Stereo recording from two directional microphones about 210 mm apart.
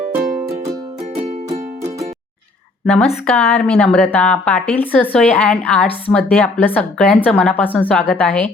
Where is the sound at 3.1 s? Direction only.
5° left (ahead or behind).